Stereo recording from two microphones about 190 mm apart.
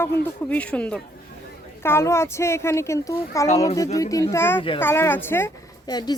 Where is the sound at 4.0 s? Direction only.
15° left (ahead or behind).